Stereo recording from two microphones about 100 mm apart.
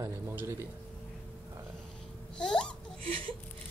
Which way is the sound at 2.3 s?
10° left (ahead or behind).